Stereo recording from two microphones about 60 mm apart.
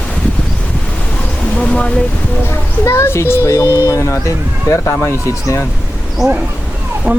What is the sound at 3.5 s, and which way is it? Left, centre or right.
Speech, left.